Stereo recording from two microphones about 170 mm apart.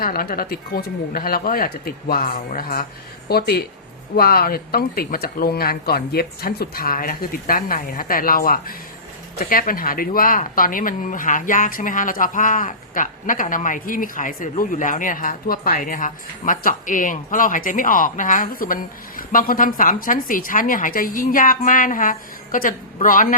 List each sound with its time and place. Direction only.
0.0 s speech: 60° left (ahead or behind)
3.2 s speech: 70° left (ahead or behind); by 23.3 s 55° left (ahead or behind)